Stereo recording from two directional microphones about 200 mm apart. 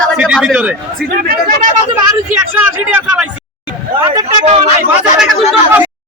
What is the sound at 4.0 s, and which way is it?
Speech, 25° right (ahead or behind).